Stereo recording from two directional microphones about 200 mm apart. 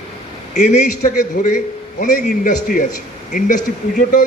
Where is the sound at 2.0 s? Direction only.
40° left (ahead or behind).